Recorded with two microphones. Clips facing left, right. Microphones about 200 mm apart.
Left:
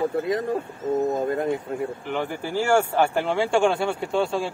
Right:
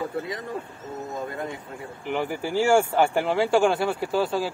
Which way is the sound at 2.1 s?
10° right (ahead or behind).